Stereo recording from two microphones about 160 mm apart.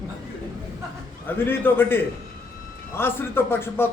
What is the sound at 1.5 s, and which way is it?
A man's voice, 15° left (ahead or behind).